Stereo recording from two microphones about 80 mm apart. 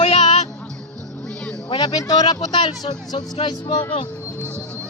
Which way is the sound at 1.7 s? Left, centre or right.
Left.